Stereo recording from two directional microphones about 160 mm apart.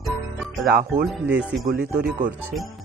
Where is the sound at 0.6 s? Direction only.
75° right (ahead or behind).